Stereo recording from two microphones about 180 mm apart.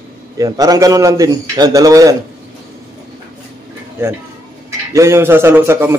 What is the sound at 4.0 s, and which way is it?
A man's voice, 15° right (ahead or behind).